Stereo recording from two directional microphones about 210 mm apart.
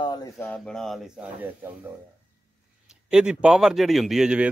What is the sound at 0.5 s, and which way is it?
Speech, 5° left (ahead or behind).